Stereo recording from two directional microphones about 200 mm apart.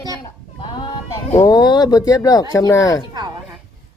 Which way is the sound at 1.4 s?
20° left (ahead or behind).